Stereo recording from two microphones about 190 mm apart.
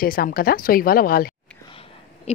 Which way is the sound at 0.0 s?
50° left (ahead or behind).